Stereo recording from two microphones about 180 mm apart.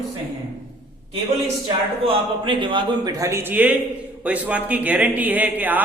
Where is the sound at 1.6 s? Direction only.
30° right (ahead or behind).